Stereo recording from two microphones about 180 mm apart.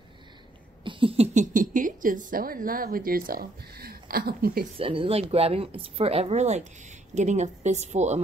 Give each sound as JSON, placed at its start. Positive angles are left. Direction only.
{"t": 0.8, "sound": "speech", "side_deg": -30}
{"t": 4.7, "sound": "speech", "side_deg": -30}